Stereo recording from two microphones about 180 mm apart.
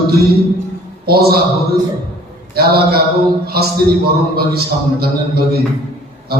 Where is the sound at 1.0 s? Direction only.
60° right (ahead or behind).